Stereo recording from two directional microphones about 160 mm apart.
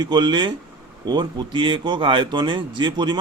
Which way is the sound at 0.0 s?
30° right (ahead or behind).